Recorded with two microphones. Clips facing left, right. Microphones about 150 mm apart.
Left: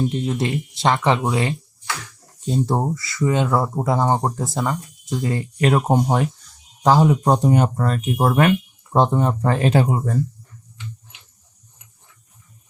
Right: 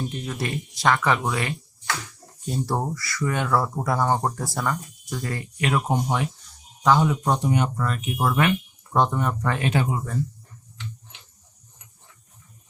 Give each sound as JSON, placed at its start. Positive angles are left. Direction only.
{"t": 0.1, "sound": "speech", "side_deg": 25}
{"t": 5.5, "sound": "speech", "side_deg": 40}
{"t": 8.9, "sound": "speech", "side_deg": 30}